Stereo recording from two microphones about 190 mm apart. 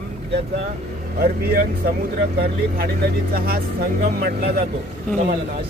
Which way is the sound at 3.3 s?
55° right (ahead or behind).